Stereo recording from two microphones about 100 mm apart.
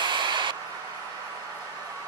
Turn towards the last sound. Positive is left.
turn(degrees=-50)  # may be behind; listen again after turning